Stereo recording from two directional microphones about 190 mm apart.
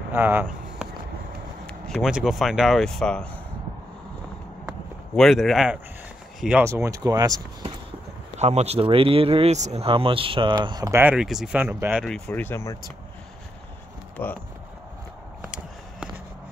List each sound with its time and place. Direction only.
0.1 s speech: 10° right (ahead or behind)
1.7 s speech: centre (ahead or behind)
4.6 s a sound: centre (ahead or behind)
6.4 s speech: 10° right (ahead or behind)
8.4 s speech: 35° right (ahead or behind); by 12.7 s 10° left (ahead or behind)
14.2 s speech: 10° left (ahead or behind)
15.4 s a sound: 5° right (ahead or behind)